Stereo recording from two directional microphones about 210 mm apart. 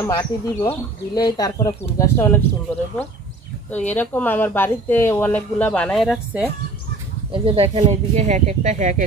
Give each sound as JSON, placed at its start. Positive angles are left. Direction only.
{"t": 0.0, "sound": "speech", "side_deg": 15}
{"t": 3.7, "sound": "speech", "side_deg": 10}
{"t": 7.4, "sound": "speech", "side_deg": -30}